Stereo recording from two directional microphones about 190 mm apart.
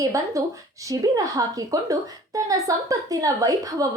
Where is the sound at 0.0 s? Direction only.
15° right (ahead or behind).